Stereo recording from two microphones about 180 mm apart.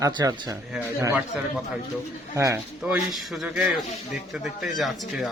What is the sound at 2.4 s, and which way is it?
A man's voice, 10° right (ahead or behind).